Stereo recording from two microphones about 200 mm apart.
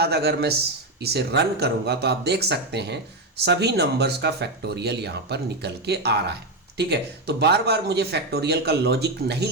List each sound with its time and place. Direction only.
0.0 s speech: 55° right (ahead or behind)